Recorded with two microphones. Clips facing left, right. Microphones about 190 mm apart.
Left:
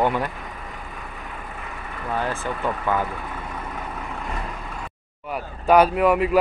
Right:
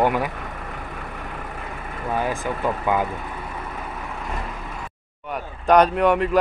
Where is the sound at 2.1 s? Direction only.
15° right (ahead or behind).